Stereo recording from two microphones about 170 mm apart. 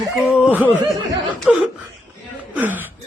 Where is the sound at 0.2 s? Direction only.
5° right (ahead or behind).